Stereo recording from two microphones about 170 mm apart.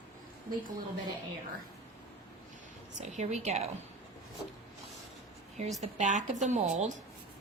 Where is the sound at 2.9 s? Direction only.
45° right (ahead or behind).